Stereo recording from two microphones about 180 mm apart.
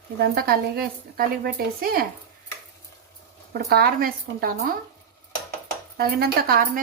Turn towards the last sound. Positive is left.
turn(degrees=-60)  # may be behind; listen again after turning